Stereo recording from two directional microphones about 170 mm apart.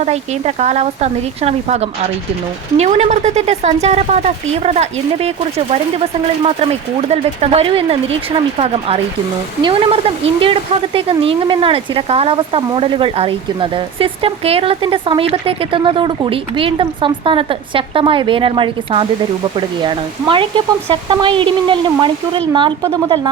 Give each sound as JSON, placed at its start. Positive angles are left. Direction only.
{"t": 0.0, "sound": "a woman's voice", "side_deg": -40}
{"t": 7.1, "sound": "a woman's voice", "side_deg": -35}